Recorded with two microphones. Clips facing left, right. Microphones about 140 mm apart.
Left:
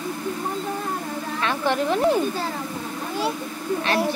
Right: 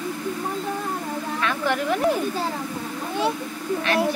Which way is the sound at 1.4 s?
30° left (ahead or behind).